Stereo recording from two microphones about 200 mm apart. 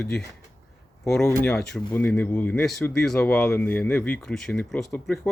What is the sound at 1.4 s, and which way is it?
Speech, 5° left (ahead or behind).